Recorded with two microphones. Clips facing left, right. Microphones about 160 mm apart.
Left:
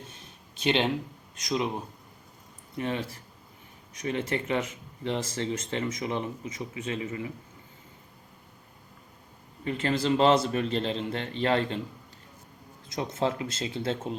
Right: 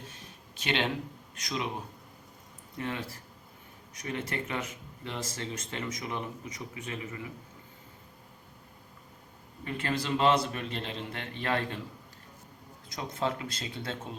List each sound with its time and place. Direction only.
0.6 s speech: 25° left (ahead or behind)
2.7 s speech: 20° left (ahead or behind)
9.6 s speech: 25° left (ahead or behind)
12.9 s speech: 25° left (ahead or behind)